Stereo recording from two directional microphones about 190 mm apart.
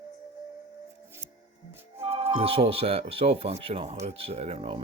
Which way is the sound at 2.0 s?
35° right (ahead or behind).